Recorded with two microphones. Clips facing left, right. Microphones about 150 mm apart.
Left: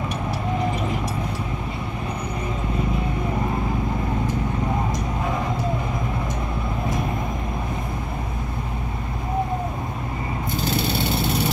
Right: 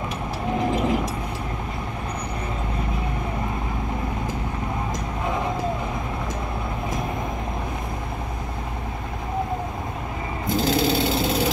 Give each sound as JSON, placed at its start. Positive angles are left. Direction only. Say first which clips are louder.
{"t": 10.5, "sound": "vehicle", "louder": "right 5 dB", "side_deg": -90}